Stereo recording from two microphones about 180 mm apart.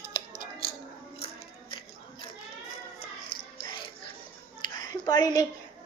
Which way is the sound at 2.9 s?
25° left (ahead or behind).